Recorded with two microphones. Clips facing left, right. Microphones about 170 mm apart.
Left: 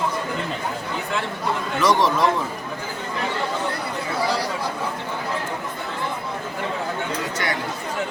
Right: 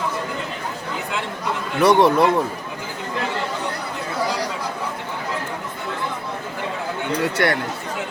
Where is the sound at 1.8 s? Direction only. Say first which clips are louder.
Right 5 dB; 60° right (ahead or behind).